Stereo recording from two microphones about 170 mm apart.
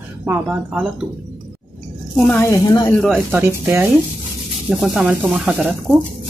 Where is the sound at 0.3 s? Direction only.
10° right (ahead or behind).